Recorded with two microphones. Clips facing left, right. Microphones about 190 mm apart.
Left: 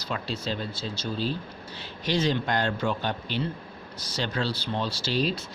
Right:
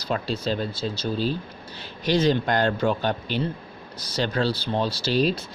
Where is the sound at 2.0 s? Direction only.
40° right (ahead or behind).